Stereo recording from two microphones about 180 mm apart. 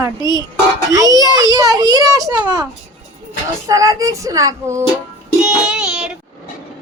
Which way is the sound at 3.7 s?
20° right (ahead or behind).